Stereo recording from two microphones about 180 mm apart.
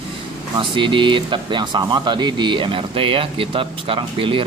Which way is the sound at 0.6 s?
25° right (ahead or behind).